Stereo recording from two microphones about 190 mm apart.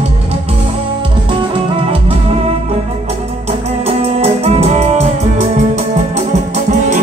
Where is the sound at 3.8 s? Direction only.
35° right (ahead or behind).